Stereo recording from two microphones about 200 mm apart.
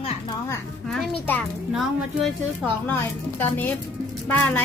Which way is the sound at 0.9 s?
5° left (ahead or behind).